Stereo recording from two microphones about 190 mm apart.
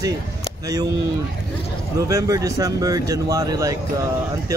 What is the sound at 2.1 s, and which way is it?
A man's voice, 15° right (ahead or behind).